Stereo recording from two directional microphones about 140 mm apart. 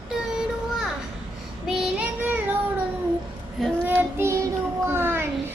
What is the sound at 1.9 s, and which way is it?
Child singing, 10° right (ahead or behind).